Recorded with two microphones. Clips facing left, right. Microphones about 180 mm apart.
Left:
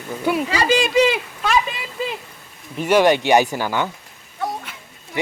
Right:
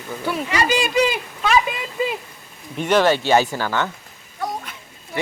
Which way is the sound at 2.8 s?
10° left (ahead or behind).